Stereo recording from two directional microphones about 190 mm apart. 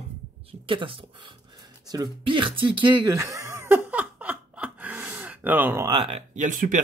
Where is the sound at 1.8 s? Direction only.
20° right (ahead or behind).